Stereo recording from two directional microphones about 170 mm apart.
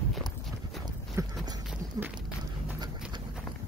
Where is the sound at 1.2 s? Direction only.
15° right (ahead or behind).